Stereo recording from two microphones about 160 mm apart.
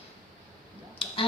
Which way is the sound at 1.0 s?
35° left (ahead or behind).